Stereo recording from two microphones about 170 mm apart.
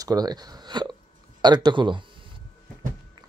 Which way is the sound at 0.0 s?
20° right (ahead or behind).